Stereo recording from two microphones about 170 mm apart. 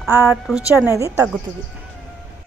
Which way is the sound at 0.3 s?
5° right (ahead or behind).